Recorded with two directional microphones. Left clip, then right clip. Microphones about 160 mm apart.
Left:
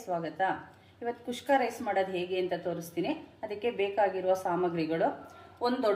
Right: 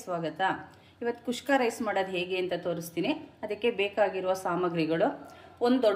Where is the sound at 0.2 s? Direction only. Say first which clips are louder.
Right 2 dB; 55° right (ahead or behind).